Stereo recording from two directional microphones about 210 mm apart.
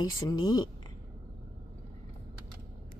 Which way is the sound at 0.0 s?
20° left (ahead or behind).